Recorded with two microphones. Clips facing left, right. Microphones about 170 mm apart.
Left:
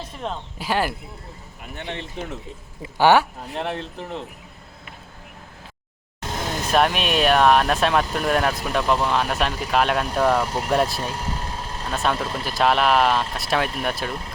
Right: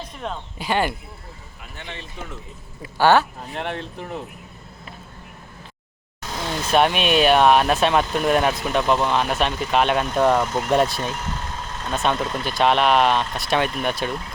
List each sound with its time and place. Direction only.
0.0 s speech: centre (ahead or behind)
1.7 s speech: 60° left (ahead or behind)
2.8 s speech: 15° left (ahead or behind)
3.5 s speech: centre (ahead or behind)
6.7 s speech: centre (ahead or behind)
11.1 s vehicle: 35° left (ahead or behind)
11.9 s speech: centre (ahead or behind)